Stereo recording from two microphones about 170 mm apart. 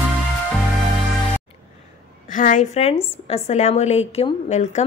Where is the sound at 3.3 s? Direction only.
40° left (ahead or behind).